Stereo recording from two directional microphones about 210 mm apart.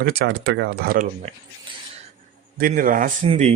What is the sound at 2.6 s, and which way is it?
Speech, 40° right (ahead or behind).